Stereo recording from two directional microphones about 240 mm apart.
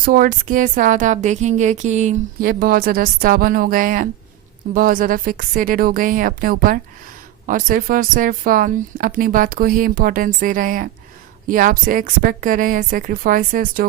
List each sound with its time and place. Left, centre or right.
0.0 s a woman's voice: right